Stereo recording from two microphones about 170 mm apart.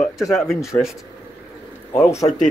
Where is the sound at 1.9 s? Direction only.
15° left (ahead or behind).